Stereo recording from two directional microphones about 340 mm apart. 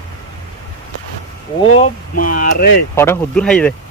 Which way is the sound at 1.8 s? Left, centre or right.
Left.